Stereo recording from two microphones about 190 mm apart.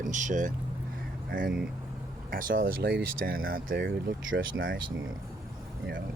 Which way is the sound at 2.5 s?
90° right.